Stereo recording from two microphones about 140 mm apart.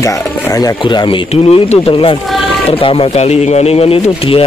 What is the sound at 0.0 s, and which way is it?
Speech, 25° left (ahead or behind).